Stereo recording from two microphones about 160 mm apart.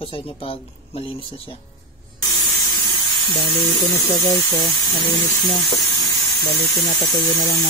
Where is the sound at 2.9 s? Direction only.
30° left (ahead or behind).